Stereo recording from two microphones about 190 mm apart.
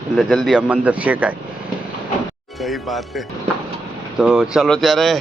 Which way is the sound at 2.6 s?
Centre (ahead or behind).